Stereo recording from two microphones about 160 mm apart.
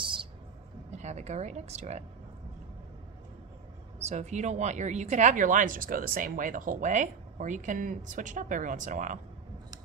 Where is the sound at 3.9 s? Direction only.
45° right (ahead or behind).